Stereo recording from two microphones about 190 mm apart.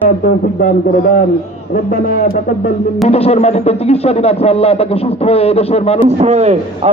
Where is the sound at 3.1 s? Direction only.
30° left (ahead or behind).